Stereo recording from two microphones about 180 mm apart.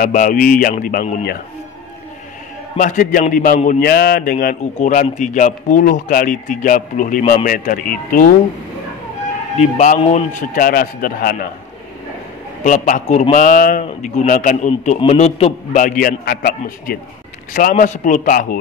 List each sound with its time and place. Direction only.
0.0 s a man's voice: 50° left (ahead or behind)
2.8 s a man's voice: 50° left (ahead or behind)
9.6 s a man's voice: 40° left (ahead or behind)
12.6 s a man's voice: 45° left (ahead or behind)